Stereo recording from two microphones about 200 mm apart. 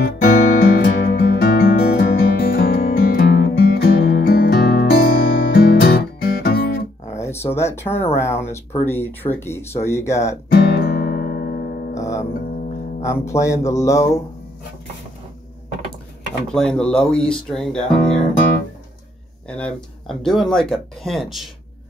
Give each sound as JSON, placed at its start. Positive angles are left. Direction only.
{"t": 0.0, "sound": "music", "side_deg": 50}
{"t": 7.5, "sound": "speech", "side_deg": 10}
{"t": 10.5, "sound": "music", "side_deg": 55}
{"t": 12.0, "sound": "music", "side_deg": 15}
{"t": 13.0, "sound": "speech", "side_deg": 15}
{"t": 16.4, "sound": "speech", "side_deg": 5}
{"t": 19.4, "sound": "speech", "side_deg": 5}